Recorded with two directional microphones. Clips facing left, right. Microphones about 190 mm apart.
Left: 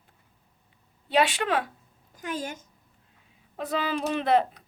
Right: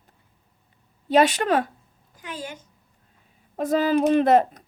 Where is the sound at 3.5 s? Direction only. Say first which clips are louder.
Right 8 dB; 45° right (ahead or behind).